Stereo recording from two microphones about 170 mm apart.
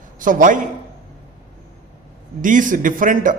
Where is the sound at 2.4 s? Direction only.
50° right (ahead or behind).